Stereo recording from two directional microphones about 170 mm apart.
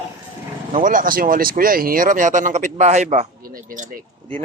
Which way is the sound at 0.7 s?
50° right (ahead or behind).